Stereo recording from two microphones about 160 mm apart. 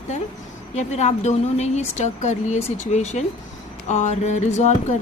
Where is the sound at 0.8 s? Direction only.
45° left (ahead or behind).